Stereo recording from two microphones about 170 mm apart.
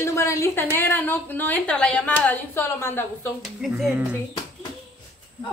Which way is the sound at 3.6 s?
Centre (ahead or behind).